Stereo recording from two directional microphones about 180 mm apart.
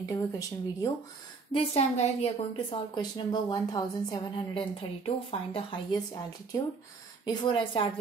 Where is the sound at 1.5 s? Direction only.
35° left (ahead or behind).